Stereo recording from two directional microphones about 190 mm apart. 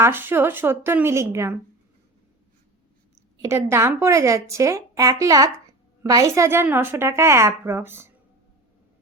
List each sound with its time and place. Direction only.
0.0 s a woman's voice: 10° right (ahead or behind)
3.3 s a woman's voice: 15° right (ahead or behind)